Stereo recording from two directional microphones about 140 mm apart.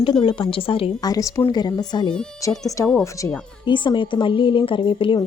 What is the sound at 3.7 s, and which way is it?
Speech, 35° left (ahead or behind).